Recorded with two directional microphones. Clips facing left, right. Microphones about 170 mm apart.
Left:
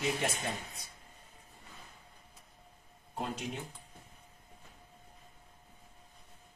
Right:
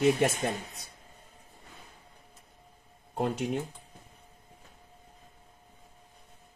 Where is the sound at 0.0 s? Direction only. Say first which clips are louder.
Right 9 dB; 60° right (ahead or behind).